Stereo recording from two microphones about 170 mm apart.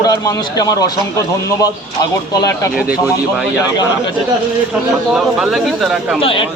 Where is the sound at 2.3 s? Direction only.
20° left (ahead or behind).